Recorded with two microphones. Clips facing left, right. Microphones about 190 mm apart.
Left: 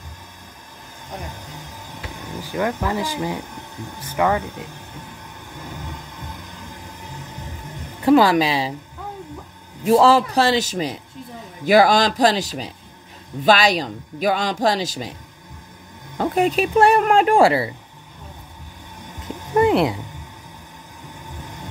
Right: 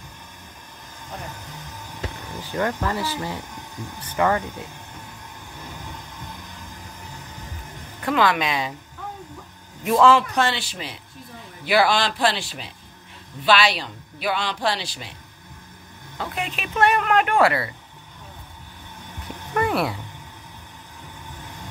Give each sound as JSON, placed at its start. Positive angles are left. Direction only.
{"t": 2.4, "sound": "speech", "side_deg": 10}
{"t": 8.0, "sound": "speech", "side_deg": 35}
{"t": 9.8, "sound": "a man's voice", "side_deg": 35}
{"t": 16.2, "sound": "speech", "side_deg": 40}
{"t": 19.2, "sound": "a sound", "side_deg": 20}